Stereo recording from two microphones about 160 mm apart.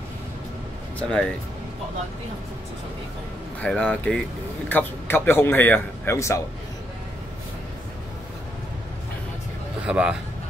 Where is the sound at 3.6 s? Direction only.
5° left (ahead or behind).